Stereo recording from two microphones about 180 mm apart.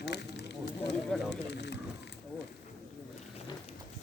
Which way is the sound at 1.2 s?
70° left (ahead or behind).